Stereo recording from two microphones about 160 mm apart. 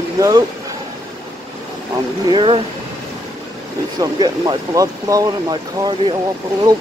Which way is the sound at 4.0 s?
25° right (ahead or behind).